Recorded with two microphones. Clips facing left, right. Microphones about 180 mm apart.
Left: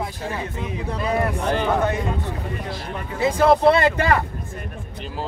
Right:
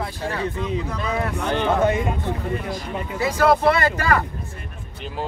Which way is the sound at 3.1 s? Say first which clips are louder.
Left 2 dB; 25° left (ahead or behind).